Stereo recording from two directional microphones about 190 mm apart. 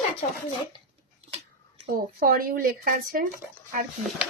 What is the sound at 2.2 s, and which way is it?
Speech, 50° right (ahead or behind).